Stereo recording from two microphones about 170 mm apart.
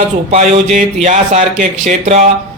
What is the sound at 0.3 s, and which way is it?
Speech, 40° right (ahead or behind).